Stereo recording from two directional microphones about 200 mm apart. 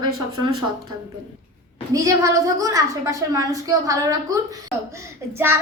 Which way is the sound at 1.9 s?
15° right (ahead or behind).